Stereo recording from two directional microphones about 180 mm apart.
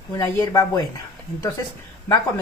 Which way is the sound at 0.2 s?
20° left (ahead or behind).